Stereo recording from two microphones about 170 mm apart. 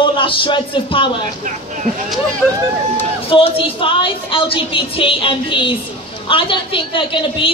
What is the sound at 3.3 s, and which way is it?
A woman's voice, 30° left (ahead or behind).